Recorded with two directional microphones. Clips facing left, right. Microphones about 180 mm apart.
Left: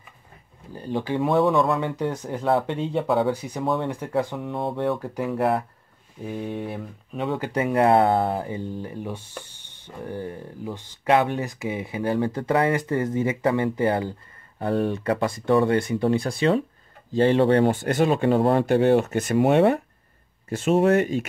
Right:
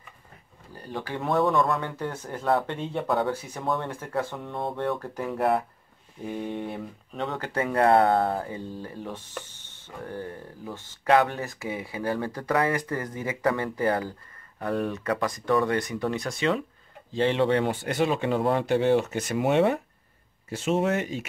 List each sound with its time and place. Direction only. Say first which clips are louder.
0.7 s speech: left 8 dB; 20° left (ahead or behind)
1.2 s speech: left 3 dB; 5° left (ahead or behind)
2.0 s speech: left 6 dB; 15° left (ahead or behind)
3.0 s speech: left 4 dB; centre (ahead or behind)
3.3 s speech: left 4 dB; 15° left (ahead or behind); by 16.6 s 30° left (ahead or behind)
17.1 s speech: left 5 dB; 45° left (ahead or behind)